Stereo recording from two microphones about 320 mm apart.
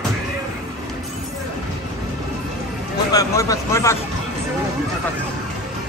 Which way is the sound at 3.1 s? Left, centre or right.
Centre.